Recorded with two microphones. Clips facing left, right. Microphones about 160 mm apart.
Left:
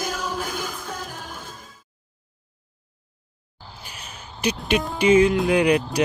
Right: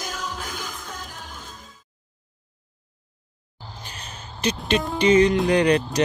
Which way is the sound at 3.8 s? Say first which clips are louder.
Even; 10° left (ahead or behind).